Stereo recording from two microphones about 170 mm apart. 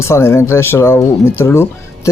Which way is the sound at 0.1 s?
15° left (ahead or behind).